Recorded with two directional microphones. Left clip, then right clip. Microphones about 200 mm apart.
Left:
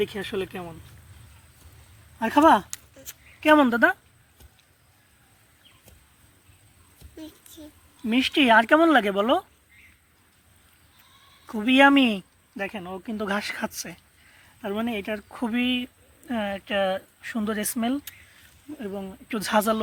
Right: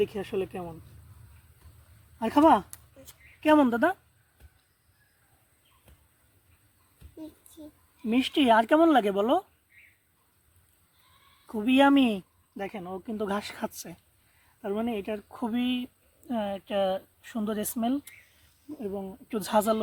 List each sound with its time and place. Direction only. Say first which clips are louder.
0.0 s speech: left 1 dB; 5° right (ahead or behind)
2.1 s speech: left 3 dB; centre (ahead or behind)
2.6 s a sound: left 10 dB; 25° right (ahead or behind)
3.4 s speech: left 4 dB; 5° left (ahead or behind)
8.1 s speech: left 4 dB; 5° left (ahead or behind)
11.6 s speech: left 4 dB; 5° left (ahead or behind)